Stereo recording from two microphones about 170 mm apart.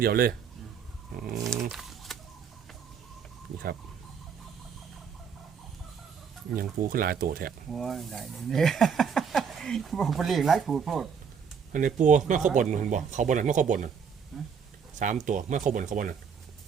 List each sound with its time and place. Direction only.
0.0 s speech: 60° right (ahead or behind)
1.4 s speech: 20° right (ahead or behind)
1.7 s a sound: centre (ahead or behind)
6.6 s speech: 55° right (ahead or behind)
7.7 s speech: centre (ahead or behind)
11.7 s speech: 50° right (ahead or behind)
14.3 s speech: centre (ahead or behind)
14.9 s speech: 45° right (ahead or behind)